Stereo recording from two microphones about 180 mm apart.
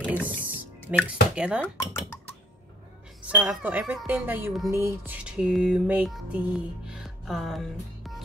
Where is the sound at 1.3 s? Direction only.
5° right (ahead or behind).